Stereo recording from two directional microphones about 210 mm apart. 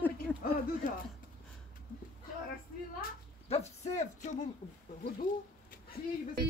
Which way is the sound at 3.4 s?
30° left (ahead or behind).